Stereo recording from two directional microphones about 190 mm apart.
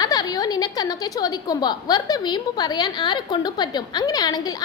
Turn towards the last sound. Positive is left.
turn(degrees=20)  # may be behind; listen again after turning